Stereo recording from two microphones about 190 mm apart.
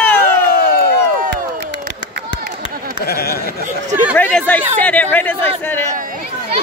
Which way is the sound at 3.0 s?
55° left (ahead or behind).